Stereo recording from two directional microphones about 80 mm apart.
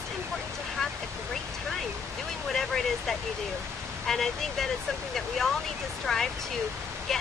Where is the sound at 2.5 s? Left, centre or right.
Centre.